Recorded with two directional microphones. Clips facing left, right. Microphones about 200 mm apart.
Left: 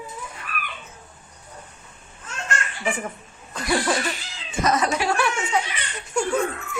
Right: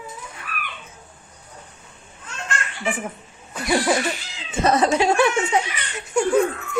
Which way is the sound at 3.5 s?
10° right (ahead or behind).